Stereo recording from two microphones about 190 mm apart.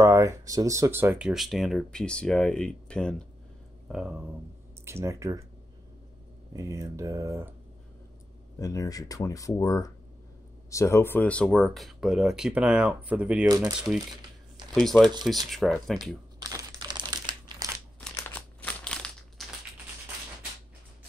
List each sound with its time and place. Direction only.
0.0 s speech: 15° right (ahead or behind)
4.8 s speech: 15° right (ahead or behind)
6.5 s speech: 15° right (ahead or behind)
8.5 s speech: 20° left (ahead or behind); by 13.5 s 5° right (ahead or behind)
13.5 s speech: 20° right (ahead or behind)
14.7 s speech: centre (ahead or behind)
16.3 s crumpling: 20° right (ahead or behind)
18.0 s crumpling: 10° left (ahead or behind)